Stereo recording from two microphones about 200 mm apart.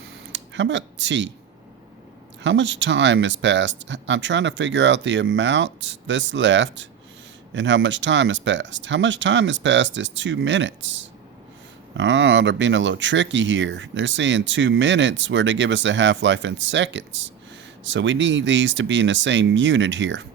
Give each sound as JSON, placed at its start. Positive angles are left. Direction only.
{"t": 0.3, "sound": "speech", "side_deg": -65}
{"t": 2.4, "sound": "speech", "side_deg": -65}